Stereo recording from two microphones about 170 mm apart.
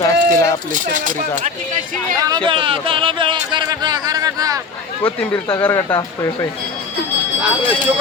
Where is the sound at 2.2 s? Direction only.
20° right (ahead or behind).